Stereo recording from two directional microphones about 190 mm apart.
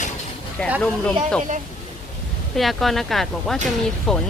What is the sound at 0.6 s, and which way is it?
Speech, 5° left (ahead or behind).